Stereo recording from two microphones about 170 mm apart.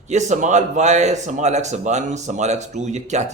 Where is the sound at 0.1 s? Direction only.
45° right (ahead or behind).